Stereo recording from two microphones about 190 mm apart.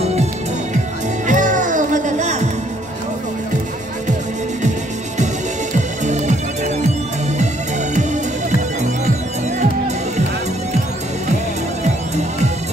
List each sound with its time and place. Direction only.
1.2 s music: 40° right (ahead or behind)
5.2 s music: 40° right (ahead or behind)
7.9 s music: 40° right (ahead or behind)